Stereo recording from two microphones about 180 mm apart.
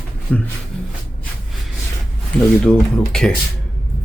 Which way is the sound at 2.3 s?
5° left (ahead or behind).